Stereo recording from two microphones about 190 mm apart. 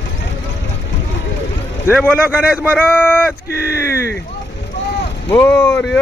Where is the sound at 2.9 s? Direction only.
10° left (ahead or behind).